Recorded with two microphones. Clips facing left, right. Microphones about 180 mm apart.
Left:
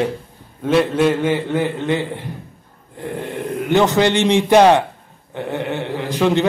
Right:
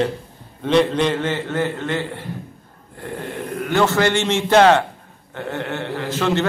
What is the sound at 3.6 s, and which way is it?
A man's voice, 20° left (ahead or behind).